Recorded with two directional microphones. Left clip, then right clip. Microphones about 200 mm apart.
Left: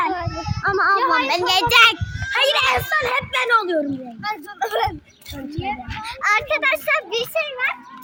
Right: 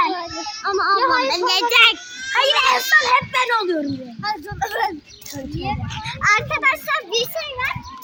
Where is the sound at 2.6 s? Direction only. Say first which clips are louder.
Right 4 dB; 35° left (ahead or behind).